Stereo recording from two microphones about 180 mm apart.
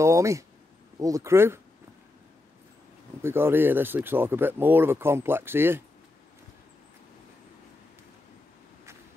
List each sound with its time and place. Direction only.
0.0 s speech: 15° right (ahead or behind)
3.2 s speech: 15° right (ahead or behind)